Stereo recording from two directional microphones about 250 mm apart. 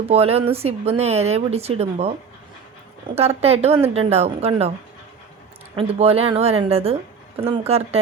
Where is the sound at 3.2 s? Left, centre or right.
Right.